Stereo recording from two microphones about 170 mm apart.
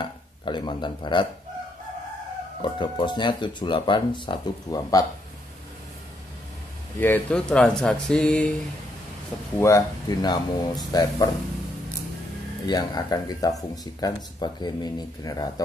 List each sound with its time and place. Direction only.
0.0 s speech: 30° left (ahead or behind)
2.6 s speech: 25° left (ahead or behind)
7.0 s speech: 10° left (ahead or behind)
9.6 s speech: 15° left (ahead or behind)
12.6 s speech: 25° left (ahead or behind)